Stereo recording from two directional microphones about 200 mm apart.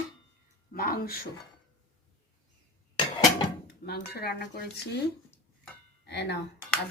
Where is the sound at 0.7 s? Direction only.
45° left (ahead or behind).